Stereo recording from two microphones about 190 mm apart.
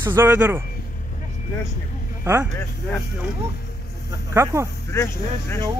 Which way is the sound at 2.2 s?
10° right (ahead or behind).